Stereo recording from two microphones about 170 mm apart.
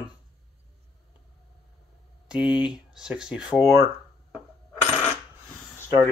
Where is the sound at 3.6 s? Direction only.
15° right (ahead or behind).